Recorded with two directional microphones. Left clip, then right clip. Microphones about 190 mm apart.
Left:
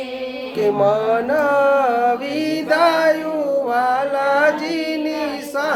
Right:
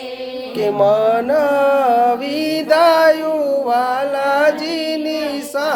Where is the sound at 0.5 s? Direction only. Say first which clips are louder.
Right 2 dB; 25° right (ahead or behind).